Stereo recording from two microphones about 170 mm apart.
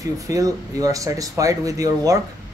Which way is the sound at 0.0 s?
20° right (ahead or behind).